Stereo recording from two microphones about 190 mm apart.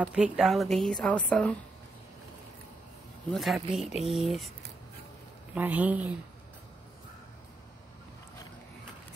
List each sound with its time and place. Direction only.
0.0 s a woman's voice: 5° right (ahead or behind)
3.3 s a woman's voice: centre (ahead or behind)
5.5 s speech: 5° right (ahead or behind)